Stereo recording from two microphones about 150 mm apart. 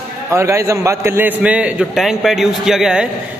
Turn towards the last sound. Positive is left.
turn(degrees=-5)  # may be behind; listen again after turning